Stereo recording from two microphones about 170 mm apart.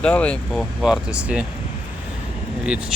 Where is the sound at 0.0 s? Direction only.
5° left (ahead or behind).